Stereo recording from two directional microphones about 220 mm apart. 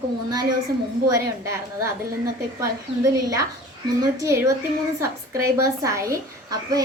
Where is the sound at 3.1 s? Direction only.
15° right (ahead or behind).